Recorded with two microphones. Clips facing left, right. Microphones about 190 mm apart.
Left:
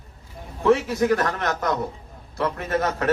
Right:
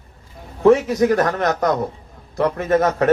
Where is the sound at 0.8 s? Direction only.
40° right (ahead or behind).